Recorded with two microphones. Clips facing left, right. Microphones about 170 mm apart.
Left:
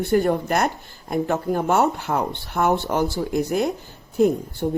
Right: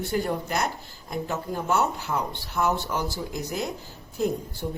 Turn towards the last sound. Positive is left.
turn(degrees=60)  # may be behind; listen again after turning